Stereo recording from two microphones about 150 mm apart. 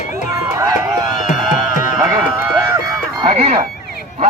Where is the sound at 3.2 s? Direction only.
40° right (ahead or behind).